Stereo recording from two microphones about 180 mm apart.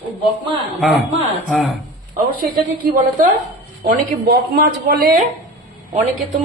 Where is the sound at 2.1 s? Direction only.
50° right (ahead or behind).